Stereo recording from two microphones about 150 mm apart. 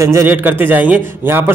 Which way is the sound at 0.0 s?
20° right (ahead or behind).